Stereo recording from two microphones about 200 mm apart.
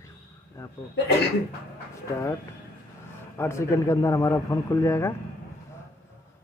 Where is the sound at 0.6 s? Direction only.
15° left (ahead or behind).